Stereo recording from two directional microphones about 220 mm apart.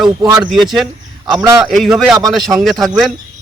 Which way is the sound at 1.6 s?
Centre (ahead or behind).